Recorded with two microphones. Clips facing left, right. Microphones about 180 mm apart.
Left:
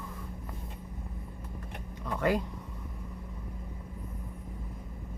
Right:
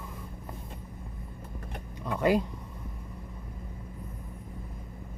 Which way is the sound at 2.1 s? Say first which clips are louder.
Right 3 dB; 15° right (ahead or behind).